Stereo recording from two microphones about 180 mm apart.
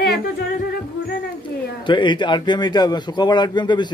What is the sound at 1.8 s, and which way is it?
A man's voice, 25° left (ahead or behind).